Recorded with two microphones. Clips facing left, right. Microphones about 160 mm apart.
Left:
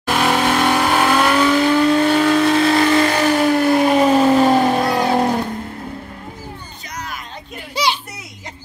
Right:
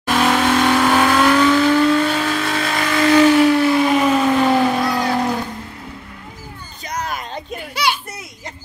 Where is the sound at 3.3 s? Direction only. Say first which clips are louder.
Right 2 dB; 45° left (ahead or behind).